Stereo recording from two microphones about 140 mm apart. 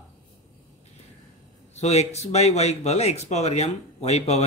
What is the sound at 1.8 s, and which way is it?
Speech, 50° left (ahead or behind).